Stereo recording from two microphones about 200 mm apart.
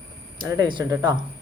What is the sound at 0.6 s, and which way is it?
Speech, 20° right (ahead or behind).